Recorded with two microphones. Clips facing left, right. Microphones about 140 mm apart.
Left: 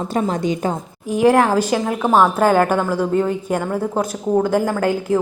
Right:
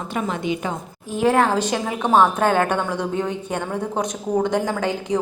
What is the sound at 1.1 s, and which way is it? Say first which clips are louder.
A woman's voice: left 4 dB; 10° left (ahead or behind).